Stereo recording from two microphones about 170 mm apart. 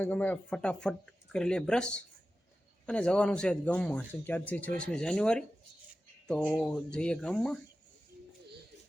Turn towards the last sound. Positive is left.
turn(degrees=5)  # may be behind; listen again after turning